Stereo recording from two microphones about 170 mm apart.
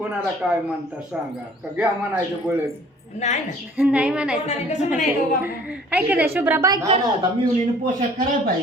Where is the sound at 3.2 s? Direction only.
45° left (ahead or behind).